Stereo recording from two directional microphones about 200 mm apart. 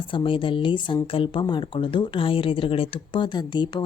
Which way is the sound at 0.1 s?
25° left (ahead or behind).